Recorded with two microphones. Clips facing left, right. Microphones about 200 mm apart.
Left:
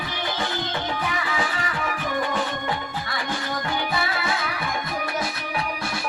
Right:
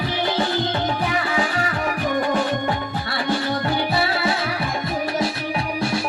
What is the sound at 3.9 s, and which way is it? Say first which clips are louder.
Music: right 5 dB; 35° right (ahead or behind).